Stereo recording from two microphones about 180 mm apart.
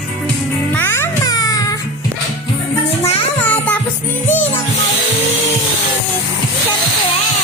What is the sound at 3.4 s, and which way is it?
Music, 10° left (ahead or behind).